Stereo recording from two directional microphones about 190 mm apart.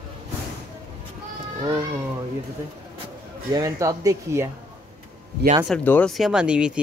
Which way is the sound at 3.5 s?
20° right (ahead or behind).